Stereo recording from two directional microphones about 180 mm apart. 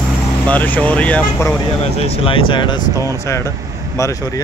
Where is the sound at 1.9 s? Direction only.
35° left (ahead or behind).